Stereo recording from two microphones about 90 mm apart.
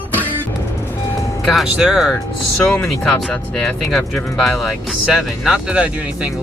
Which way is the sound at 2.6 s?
15° left (ahead or behind).